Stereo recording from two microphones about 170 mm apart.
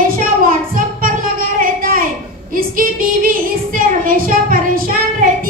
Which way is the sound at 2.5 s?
55° right (ahead or behind).